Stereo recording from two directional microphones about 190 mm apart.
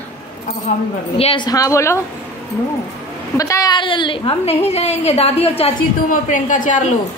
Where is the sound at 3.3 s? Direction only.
15° left (ahead or behind).